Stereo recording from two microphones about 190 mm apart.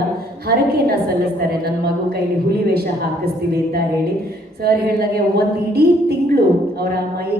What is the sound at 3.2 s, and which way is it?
Speech, 55° right (ahead or behind).